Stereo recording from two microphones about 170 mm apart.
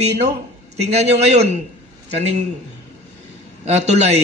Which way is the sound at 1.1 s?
40° right (ahead or behind).